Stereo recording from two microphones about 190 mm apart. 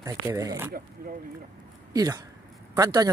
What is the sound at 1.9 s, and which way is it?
Speech, 20° right (ahead or behind).